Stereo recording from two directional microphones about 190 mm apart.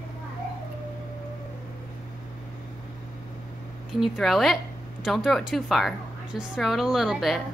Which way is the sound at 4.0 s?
Centre (ahead or behind).